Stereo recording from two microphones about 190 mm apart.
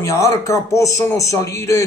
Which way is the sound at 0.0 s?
15° left (ahead or behind).